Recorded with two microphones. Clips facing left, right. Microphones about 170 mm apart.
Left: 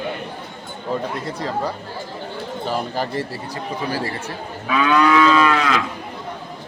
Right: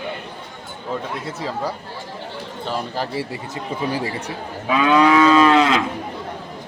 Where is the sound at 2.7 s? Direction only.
Centre (ahead or behind).